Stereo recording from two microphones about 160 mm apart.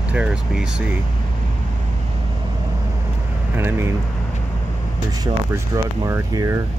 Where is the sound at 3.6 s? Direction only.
15° right (ahead or behind).